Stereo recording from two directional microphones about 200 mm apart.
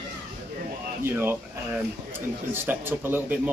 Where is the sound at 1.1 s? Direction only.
10° right (ahead or behind).